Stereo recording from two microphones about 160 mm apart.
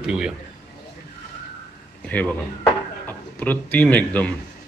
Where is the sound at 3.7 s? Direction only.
10° left (ahead or behind).